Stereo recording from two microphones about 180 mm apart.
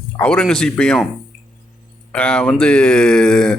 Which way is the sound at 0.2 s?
5° left (ahead or behind).